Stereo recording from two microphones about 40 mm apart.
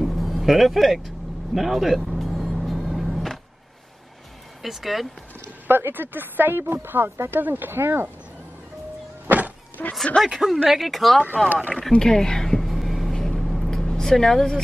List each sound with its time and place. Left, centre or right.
0.0 s vehicle: centre
4.6 s speech: centre
5.7 s speech: right
6.6 s speech: right
9.8 s speech: left
10.1 s a woman's voice: left
10.7 s speech: centre
11.4 s speech: right
11.9 s speech: centre
12.6 s vehicle: centre
13.7 s vehicle: centre